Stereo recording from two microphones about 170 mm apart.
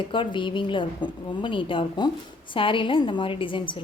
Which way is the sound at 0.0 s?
30° left (ahead or behind).